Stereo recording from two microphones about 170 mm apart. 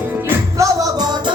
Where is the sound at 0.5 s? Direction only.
25° right (ahead or behind).